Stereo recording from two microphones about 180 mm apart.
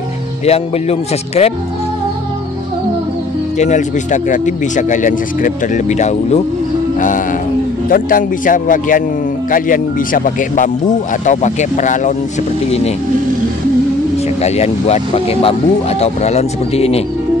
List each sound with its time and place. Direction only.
0.5 s speech: 35° left (ahead or behind)
3.5 s speech: 40° left (ahead or behind)
7.9 s speech: 50° left (ahead or behind)
14.4 s speech: 35° left (ahead or behind)